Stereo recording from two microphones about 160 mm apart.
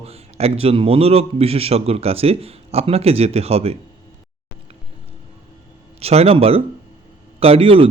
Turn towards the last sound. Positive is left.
turn(degrees=-35)  # may be behind; listen again after turning